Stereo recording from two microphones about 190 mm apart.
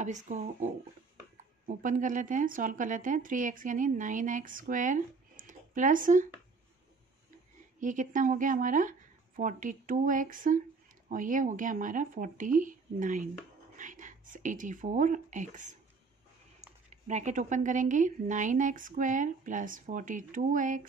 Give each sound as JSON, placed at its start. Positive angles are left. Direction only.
{"t": 0.0, "sound": "speech", "side_deg": -40}
{"t": 1.8, "sound": "speech", "side_deg": -45}
{"t": 7.8, "sound": "speech", "side_deg": -40}
{"t": 16.9, "sound": "speech", "side_deg": -40}